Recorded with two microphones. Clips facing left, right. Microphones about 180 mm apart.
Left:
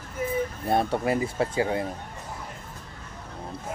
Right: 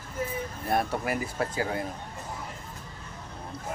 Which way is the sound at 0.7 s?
25° left (ahead or behind).